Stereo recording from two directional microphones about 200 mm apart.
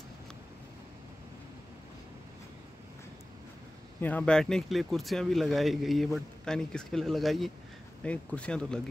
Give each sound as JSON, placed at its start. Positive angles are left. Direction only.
{"t": 4.0, "sound": "speech", "side_deg": 5}